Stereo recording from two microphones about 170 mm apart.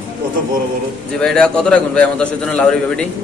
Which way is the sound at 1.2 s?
5° left (ahead or behind).